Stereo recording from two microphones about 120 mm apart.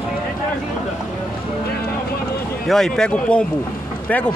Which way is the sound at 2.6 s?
5° left (ahead or behind).